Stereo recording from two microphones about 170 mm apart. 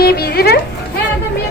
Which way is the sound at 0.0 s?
65° left (ahead or behind).